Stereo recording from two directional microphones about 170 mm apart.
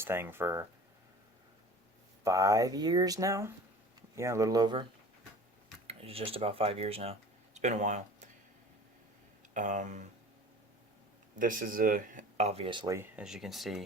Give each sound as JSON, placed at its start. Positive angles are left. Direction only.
{"t": 0.0, "sound": "speech", "side_deg": -15}
{"t": 2.2, "sound": "speech", "side_deg": -20}
{"t": 5.9, "sound": "speech", "side_deg": -35}
{"t": 9.6, "sound": "speech", "side_deg": -45}
{"t": 11.3, "sound": "speech", "side_deg": -55}
{"t": 12.9, "sound": "speech", "side_deg": -15}
{"t": 13.2, "sound": "speech", "side_deg": -5}